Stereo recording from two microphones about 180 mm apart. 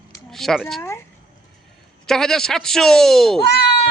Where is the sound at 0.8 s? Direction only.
15° left (ahead or behind).